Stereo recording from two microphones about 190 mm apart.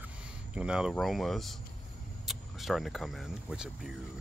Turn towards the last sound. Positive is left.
turn(degrees=0)  # may be behind; listen again after turning